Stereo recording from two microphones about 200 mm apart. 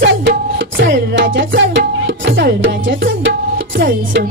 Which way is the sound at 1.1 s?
65° right (ahead or behind).